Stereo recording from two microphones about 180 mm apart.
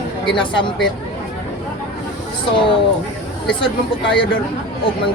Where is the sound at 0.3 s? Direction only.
25° left (ahead or behind).